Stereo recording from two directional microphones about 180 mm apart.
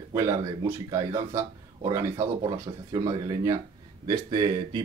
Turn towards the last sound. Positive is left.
turn(degrees=-25)  # may be behind; listen again after turning